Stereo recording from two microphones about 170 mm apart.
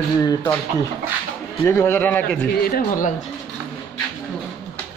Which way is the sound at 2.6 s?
60° left (ahead or behind).